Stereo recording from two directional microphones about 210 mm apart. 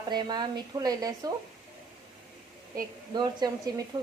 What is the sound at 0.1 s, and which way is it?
Speech, 20° right (ahead or behind).